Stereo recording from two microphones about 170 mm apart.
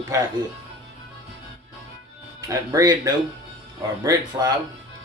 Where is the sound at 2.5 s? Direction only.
20° right (ahead or behind).